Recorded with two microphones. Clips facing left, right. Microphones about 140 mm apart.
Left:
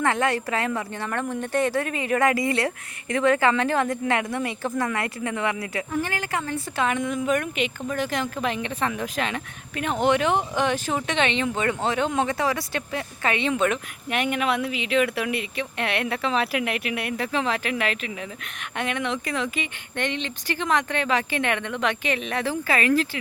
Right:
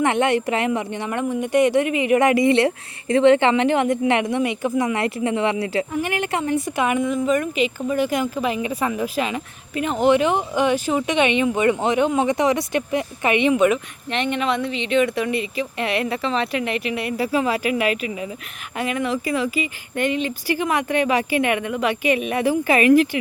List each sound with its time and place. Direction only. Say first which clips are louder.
0.0 s speech: right 5 dB; 20° right (ahead or behind)
7.0 s speech: right 4 dB; centre (ahead or behind)
14.1 s speech: right 2 dB; 5° left (ahead or behind); by 23.0 s 15° right (ahead or behind)